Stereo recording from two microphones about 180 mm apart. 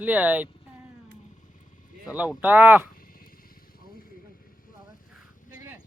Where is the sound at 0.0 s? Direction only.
10° right (ahead or behind).